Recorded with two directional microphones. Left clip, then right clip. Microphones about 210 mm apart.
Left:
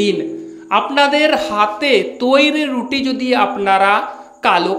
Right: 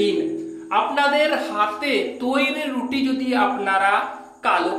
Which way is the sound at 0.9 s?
40° left (ahead or behind).